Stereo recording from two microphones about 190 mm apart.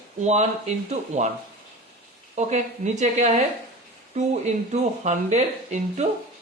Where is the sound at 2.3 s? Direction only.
40° right (ahead or behind).